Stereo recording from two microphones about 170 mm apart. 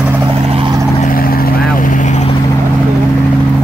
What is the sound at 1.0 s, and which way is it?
Vehicle, 55° left (ahead or behind).